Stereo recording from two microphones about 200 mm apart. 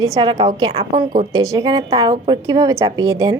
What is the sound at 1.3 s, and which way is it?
A woman's voice, 15° right (ahead or behind).